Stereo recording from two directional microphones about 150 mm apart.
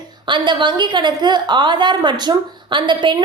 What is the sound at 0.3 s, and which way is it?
A woman's voice, 30° right (ahead or behind).